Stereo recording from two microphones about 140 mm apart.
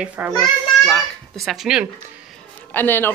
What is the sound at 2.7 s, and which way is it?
Speech, 15° left (ahead or behind).